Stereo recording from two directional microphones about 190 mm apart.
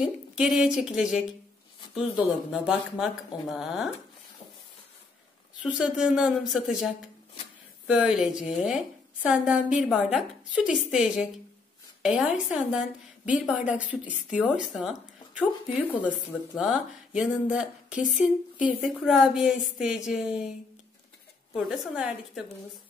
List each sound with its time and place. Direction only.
0.0 s a woman's voice: 5° right (ahead or behind)
5.6 s a woman's voice: 5° right (ahead or behind)
8.4 s a woman's voice: 35° left (ahead or behind)
8.6 s a woman's voice: 5° right (ahead or behind)
16.5 s a woman's voice: 5° right (ahead or behind)
21.5 s a woman's voice: 5° right (ahead or behind)